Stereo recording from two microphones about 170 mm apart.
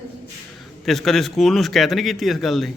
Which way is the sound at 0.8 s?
Centre (ahead or behind).